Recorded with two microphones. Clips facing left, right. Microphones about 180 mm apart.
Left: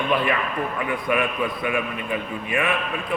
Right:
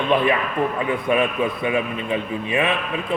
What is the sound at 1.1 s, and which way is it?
A man's voice, 25° right (ahead or behind).